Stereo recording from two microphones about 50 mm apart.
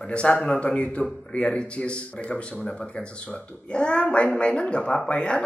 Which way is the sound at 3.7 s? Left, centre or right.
Centre.